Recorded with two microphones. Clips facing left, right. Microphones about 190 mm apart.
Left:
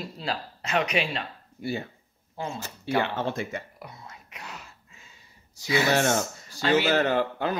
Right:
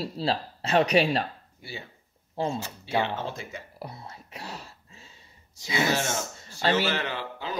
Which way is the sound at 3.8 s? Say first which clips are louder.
Right 4 dB; 30° right (ahead or behind).